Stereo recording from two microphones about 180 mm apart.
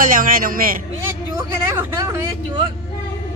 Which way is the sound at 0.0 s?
50° right (ahead or behind).